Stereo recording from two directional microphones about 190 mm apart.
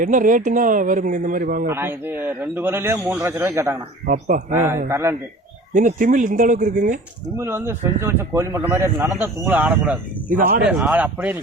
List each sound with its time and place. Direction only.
0.0 s speech: 45° right (ahead or behind)
1.6 s speech: 10° right (ahead or behind)
4.0 s speech: 45° right (ahead or behind)
4.5 s speech: 15° right (ahead or behind)
5.7 s speech: 45° right (ahead or behind)
7.3 s speech: 15° right (ahead or behind)
10.2 s speech: 50° right (ahead or behind)
10.7 s speech: 5° right (ahead or behind)